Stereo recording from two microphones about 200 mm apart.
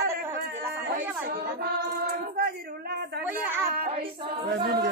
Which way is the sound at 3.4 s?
10° right (ahead or behind).